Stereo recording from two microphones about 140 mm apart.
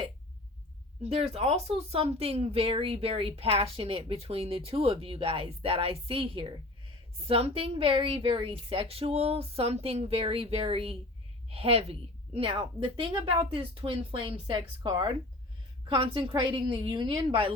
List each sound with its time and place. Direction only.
1.0 s a woman's voice: 50° right (ahead or behind)